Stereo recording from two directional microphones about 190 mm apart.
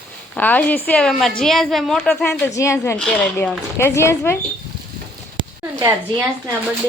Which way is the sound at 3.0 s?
5° left (ahead or behind).